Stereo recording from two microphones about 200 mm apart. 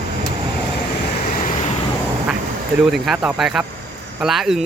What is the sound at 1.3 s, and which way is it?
Vehicle, 40° left (ahead or behind).